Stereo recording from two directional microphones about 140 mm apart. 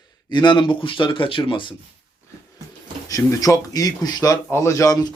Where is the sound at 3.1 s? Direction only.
25° left (ahead or behind).